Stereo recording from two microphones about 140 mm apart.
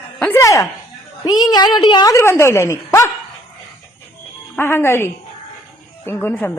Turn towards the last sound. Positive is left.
turn(degrees=15)  # may be behind; listen again after turning